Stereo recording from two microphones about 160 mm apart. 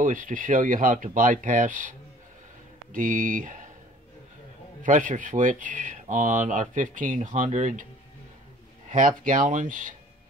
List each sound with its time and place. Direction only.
0.0 s speech: 55° right (ahead or behind)
4.8 s speech: 55° right (ahead or behind)
8.9 s speech: 55° right (ahead or behind)